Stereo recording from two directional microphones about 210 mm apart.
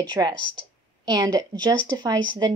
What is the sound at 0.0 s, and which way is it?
A woman's voice, 20° right (ahead or behind).